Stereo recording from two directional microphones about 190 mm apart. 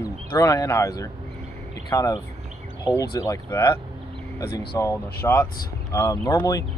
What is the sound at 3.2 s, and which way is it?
Speech, 15° left (ahead or behind).